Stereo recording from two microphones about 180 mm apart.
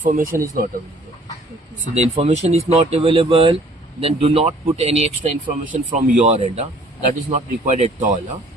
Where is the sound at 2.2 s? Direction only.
35° right (ahead or behind).